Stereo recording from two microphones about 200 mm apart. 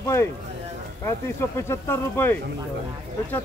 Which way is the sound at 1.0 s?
15° left (ahead or behind).